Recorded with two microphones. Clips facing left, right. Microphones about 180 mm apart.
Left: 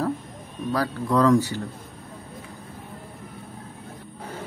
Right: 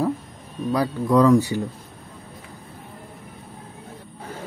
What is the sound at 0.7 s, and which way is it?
Speech, 10° right (ahead or behind).